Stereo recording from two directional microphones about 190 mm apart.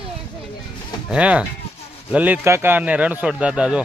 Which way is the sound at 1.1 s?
5° right (ahead or behind).